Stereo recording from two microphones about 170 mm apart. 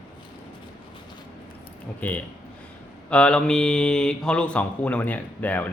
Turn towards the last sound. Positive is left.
turn(degrees=10)  # may be behind; listen again after turning